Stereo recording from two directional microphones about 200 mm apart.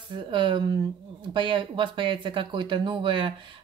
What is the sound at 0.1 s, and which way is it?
Speech, 25° right (ahead or behind).